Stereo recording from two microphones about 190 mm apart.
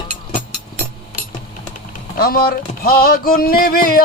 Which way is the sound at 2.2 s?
55° left (ahead or behind).